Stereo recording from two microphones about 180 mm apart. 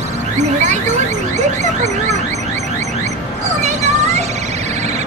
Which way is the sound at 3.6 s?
40° right (ahead or behind).